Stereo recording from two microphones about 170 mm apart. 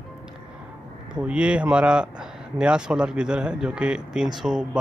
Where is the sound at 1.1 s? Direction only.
5° right (ahead or behind).